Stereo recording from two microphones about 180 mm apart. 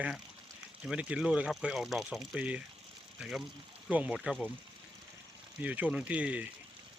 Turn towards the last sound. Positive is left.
turn(degrees=-5)  # may be behind; listen again after turning